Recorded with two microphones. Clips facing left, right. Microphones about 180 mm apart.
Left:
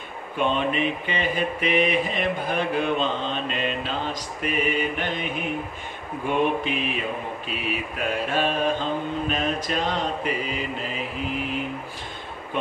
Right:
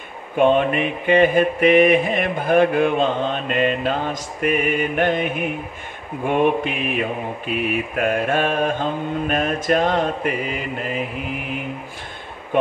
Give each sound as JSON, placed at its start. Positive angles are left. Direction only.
{"t": 0.4, "sound": "mantra", "side_deg": -55}